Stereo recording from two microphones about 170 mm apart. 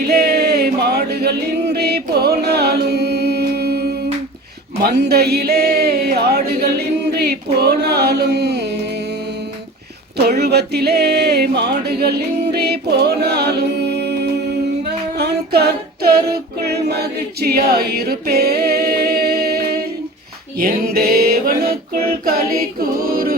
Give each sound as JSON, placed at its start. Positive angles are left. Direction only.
{"t": 0.0, "sound": "music", "side_deg": -65}
{"t": 4.8, "sound": "speech", "side_deg": -70}
{"t": 10.2, "sound": "speech", "side_deg": -70}
{"t": 15.1, "sound": "a capella", "side_deg": -70}
{"t": 20.6, "sound": "a sound", "side_deg": -65}
{"t": 22.8, "sound": "a capella", "side_deg": -60}